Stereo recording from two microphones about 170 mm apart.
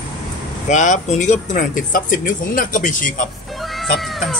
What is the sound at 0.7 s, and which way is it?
Speech, 45° left (ahead or behind).